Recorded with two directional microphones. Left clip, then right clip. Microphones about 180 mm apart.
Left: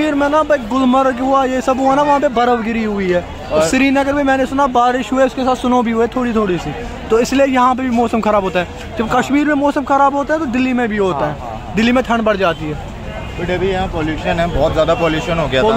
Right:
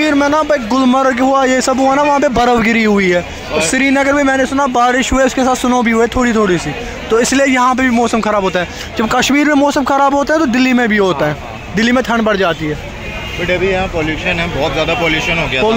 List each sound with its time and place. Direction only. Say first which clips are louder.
0.0 s a man's voice: right 2 dB; 20° right (ahead or behind)
3.5 s speech: even; 5° right (ahead or behind)
4.6 s speech: right 1 dB; 20° right (ahead or behind)
8.9 s a man's voice: right 2 dB; 30° right (ahead or behind)
14.3 s speech: left 4 dB; 10° left (ahead or behind)